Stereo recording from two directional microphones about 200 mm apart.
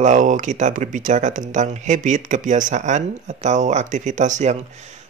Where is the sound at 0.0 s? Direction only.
40° right (ahead or behind).